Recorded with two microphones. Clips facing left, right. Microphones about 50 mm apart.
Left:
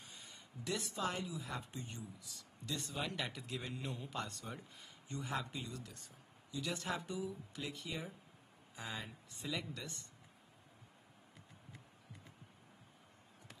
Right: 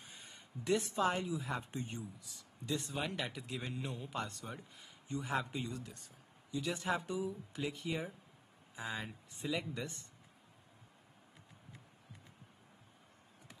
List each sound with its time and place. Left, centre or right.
0.2 s speech: right
2.9 s a man's voice: centre
3.2 s a man's voice: centre